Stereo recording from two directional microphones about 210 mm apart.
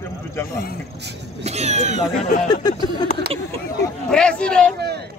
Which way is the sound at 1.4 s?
30° right (ahead or behind).